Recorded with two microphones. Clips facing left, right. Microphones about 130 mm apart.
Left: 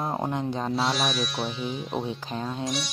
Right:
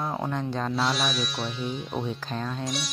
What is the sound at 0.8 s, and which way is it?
Speech, centre (ahead or behind).